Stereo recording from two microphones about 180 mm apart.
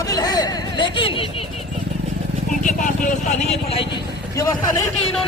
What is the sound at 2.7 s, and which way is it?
Speech, 45° left (ahead or behind).